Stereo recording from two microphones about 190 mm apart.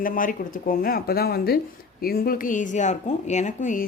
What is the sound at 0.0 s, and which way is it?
A woman's voice, 45° left (ahead or behind).